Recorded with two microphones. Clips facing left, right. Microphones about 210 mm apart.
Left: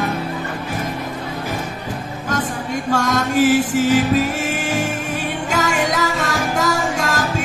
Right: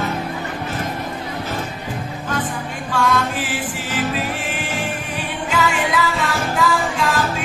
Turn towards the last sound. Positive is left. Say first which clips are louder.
# even
turn(degrees=45)  # may be behind; listen again after turning